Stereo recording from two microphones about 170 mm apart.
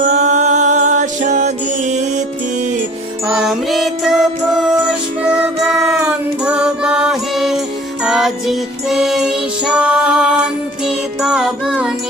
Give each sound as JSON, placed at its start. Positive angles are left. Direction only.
{"t": 0.0, "sound": "music", "side_deg": -45}
{"t": 3.2, "sound": "music", "side_deg": -5}